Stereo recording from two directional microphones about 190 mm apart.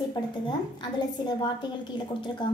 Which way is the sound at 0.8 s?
25° left (ahead or behind).